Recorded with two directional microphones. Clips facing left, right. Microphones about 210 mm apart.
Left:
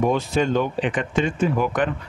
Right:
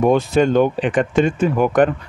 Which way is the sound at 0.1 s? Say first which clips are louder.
Right 6 dB; 55° right (ahead or behind).